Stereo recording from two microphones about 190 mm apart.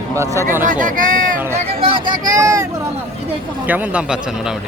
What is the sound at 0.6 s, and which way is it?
Speech, 45° right (ahead or behind).